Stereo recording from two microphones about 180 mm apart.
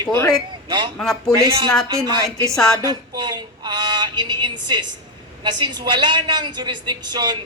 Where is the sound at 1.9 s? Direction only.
15° right (ahead or behind).